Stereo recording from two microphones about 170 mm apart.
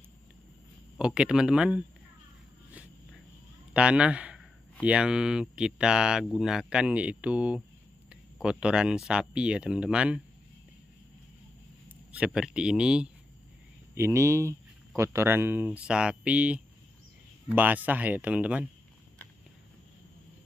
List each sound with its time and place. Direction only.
0.9 s speech: 5° right (ahead or behind)
2.7 s a sound: 10° right (ahead or behind)
3.7 s a man's voice: 5° right (ahead or behind)
12.1 s speech: 5° right (ahead or behind)
13.9 s speech: 15° right (ahead or behind)